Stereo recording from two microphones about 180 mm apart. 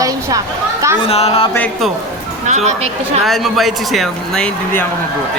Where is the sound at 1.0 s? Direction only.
35° left (ahead or behind).